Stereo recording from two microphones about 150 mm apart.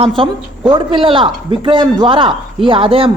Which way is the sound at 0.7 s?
35° right (ahead or behind).